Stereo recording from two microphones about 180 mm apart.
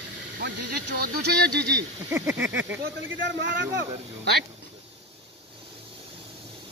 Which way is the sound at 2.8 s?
75° right (ahead or behind).